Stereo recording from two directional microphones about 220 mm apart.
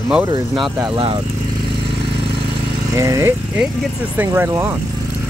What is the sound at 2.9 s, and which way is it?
Speech, 15° right (ahead or behind).